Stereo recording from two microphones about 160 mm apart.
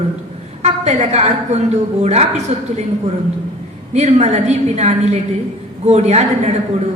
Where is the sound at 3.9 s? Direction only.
45° right (ahead or behind).